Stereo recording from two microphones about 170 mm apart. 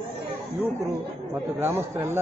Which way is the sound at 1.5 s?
15° right (ahead or behind).